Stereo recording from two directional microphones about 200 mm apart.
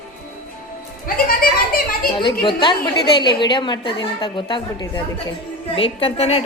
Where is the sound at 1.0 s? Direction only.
45° left (ahead or behind).